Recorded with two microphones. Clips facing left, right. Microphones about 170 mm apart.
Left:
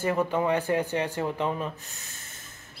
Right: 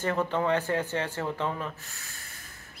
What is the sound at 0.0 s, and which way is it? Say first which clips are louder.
A man's voice: left 2 dB; 10° left (ahead or behind).